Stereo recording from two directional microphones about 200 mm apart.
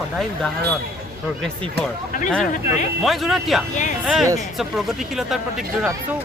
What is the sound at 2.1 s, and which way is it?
Speech, 40° left (ahead or behind).